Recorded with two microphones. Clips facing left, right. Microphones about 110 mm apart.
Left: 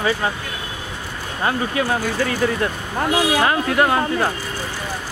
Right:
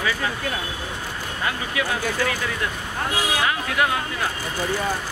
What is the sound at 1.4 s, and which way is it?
Speech, 35° left (ahead or behind).